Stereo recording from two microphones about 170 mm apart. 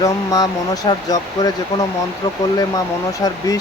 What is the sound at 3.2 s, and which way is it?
Speech, 20° left (ahead or behind).